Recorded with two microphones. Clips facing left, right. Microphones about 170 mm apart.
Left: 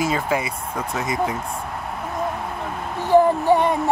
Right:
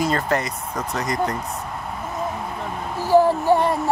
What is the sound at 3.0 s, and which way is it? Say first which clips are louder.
Music: left 1 dB; 5° right (ahead or behind).